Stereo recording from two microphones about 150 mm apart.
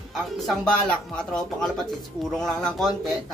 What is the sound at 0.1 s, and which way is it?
Speech, 5° left (ahead or behind).